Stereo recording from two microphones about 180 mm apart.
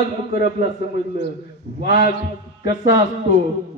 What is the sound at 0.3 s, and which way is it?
Speech, 45° right (ahead or behind).